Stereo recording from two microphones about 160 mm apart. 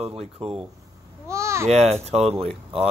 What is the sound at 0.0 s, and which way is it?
Speech, 35° right (ahead or behind).